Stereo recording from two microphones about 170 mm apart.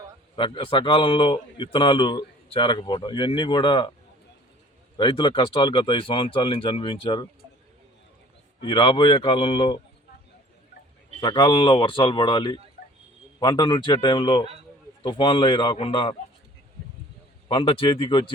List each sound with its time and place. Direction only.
0.3 s a man's voice: 30° left (ahead or behind)
4.9 s speech: 30° left (ahead or behind)
8.6 s speech: 30° left (ahead or behind)
11.2 s a man's voice: 25° left (ahead or behind)
17.5 s speech: 30° left (ahead or behind)